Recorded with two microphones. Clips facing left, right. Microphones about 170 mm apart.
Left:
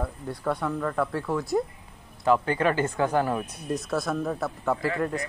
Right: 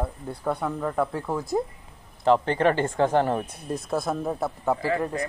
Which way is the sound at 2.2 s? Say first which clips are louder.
Right 2 dB; 30° right (ahead or behind).